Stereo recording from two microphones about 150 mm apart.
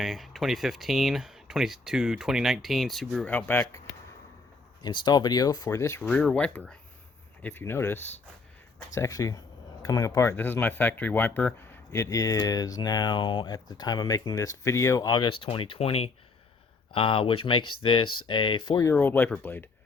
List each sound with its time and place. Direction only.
0.0 s speech: centre (ahead or behind)
3.3 s speech: 15° left (ahead or behind)
4.8 s speech: 30° left (ahead or behind)
6.0 s speech: 5° left (ahead or behind)
9.0 s speech: 20° left (ahead or behind)
18.8 s speech: 15° left (ahead or behind)